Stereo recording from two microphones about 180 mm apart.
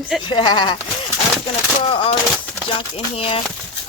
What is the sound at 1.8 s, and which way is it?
Speech, 30° left (ahead or behind).